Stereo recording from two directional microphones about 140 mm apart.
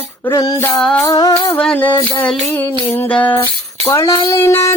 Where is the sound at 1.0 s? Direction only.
25° left (ahead or behind).